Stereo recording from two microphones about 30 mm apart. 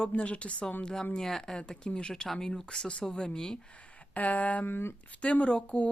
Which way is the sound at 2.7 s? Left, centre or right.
Left.